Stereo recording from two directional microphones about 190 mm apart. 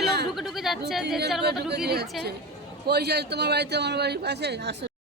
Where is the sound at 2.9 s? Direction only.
60° right (ahead or behind).